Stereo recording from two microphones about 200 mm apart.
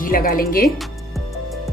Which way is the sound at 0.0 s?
45° left (ahead or behind).